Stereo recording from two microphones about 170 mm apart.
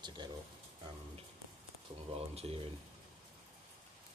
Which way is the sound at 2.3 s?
35° right (ahead or behind).